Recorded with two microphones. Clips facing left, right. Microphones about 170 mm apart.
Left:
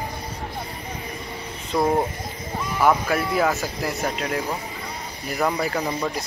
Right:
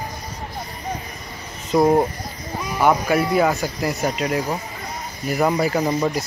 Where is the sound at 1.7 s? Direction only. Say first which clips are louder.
Right 5 dB; 25° right (ahead or behind).